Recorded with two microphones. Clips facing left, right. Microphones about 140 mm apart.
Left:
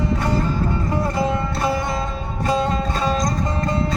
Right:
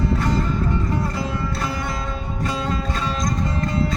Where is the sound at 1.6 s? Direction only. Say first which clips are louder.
Left 5 dB; 25° left (ahead or behind).